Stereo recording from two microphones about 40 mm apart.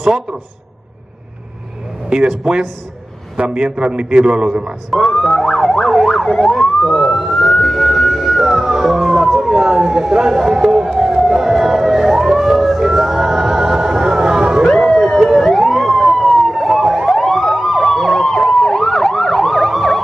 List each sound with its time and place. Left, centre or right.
2.0 s a man's voice: right
4.9 s police car: centre
6.0 s speech: centre
7.2 s police car: centre
9.4 s speech: centre
11.0 s emergency vehicle: centre
14.9 s police car: centre
15.5 s emergency vehicle: centre
17.1 s emergency vehicle: centre